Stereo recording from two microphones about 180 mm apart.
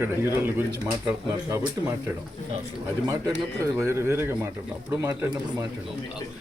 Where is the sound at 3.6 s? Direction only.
15° right (ahead or behind).